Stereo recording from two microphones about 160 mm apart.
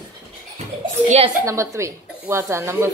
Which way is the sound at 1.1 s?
45° right (ahead or behind).